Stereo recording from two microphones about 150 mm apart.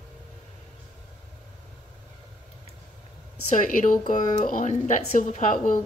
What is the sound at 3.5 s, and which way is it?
Speech, 60° left (ahead or behind).